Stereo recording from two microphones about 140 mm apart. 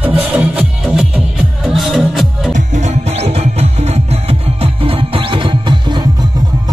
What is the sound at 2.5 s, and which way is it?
Music, 60° right (ahead or behind).